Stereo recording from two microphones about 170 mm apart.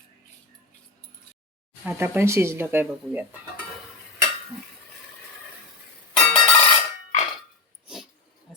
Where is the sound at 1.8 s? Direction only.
10° right (ahead or behind).